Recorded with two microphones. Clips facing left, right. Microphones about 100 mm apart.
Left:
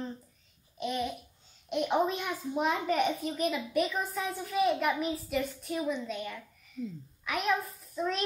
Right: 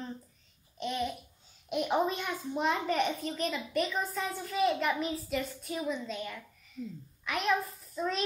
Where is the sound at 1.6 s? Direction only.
Centre (ahead or behind).